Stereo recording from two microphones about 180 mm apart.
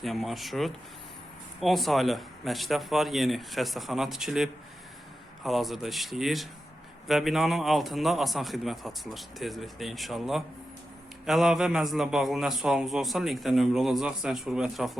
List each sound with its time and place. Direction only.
0.0 s a man's voice: centre (ahead or behind)